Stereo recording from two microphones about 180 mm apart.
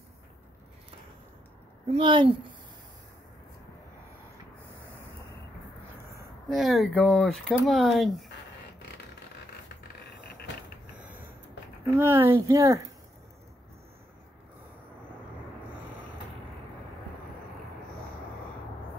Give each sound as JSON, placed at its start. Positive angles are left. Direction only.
{"t": 1.9, "sound": "a woman's voice", "side_deg": -30}
{"t": 6.5, "sound": "speech", "side_deg": 0}
{"t": 11.9, "sound": "speech", "side_deg": -15}